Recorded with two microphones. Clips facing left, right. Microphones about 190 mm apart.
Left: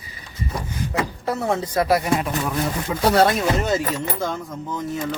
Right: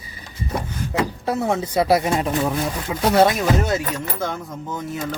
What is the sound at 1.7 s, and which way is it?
Speech, 25° right (ahead or behind).